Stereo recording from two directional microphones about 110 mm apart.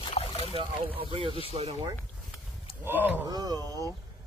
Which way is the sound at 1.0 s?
55° right (ahead or behind).